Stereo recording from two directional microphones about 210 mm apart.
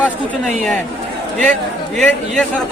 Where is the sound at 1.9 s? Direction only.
5° left (ahead or behind).